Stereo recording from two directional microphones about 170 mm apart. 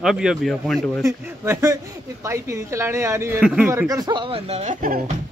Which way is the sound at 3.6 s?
20° right (ahead or behind).